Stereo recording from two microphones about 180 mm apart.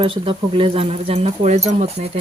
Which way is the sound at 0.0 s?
30° right (ahead or behind).